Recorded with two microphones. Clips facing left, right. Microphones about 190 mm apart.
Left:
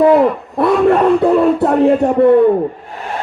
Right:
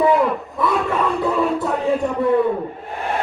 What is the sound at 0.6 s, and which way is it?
Speech, 65° left (ahead or behind).